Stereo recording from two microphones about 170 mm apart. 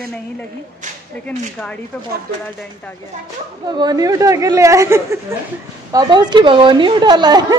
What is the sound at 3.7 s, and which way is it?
A woman's voice, 25° right (ahead or behind).